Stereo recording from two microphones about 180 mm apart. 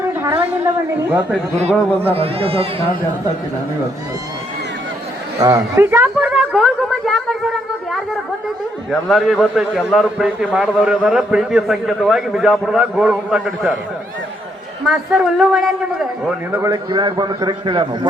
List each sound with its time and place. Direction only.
0.1 s a sound: 10° right (ahead or behind)
1.5 s a man's voice: 35° right (ahead or behind)
5.4 s a woman's voice: 20° right (ahead or behind); by 13.7 s 5° right (ahead or behind)
14.8 s a man's voice: 5° right (ahead or behind)
16.6 s a man's voice: 20° right (ahead or behind)